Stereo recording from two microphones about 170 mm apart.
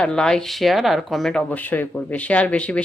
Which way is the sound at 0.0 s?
5° left (ahead or behind).